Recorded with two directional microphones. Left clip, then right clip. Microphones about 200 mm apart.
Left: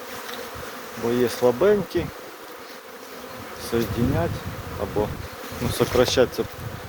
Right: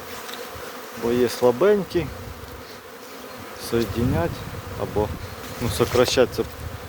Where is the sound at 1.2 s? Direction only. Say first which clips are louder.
Right 1 dB; 15° right (ahead or behind).